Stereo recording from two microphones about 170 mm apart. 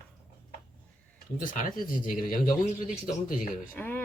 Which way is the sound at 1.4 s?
50° left (ahead or behind).